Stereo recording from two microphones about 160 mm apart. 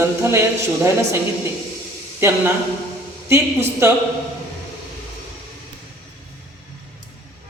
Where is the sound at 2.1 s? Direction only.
15° right (ahead or behind).